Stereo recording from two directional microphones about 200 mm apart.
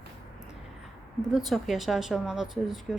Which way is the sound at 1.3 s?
Centre (ahead or behind).